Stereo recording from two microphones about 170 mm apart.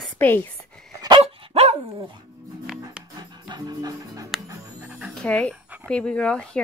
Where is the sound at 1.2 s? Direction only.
35° right (ahead or behind).